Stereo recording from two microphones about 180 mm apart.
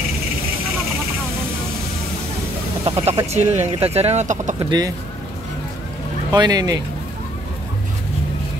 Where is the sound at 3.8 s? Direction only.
35° right (ahead or behind).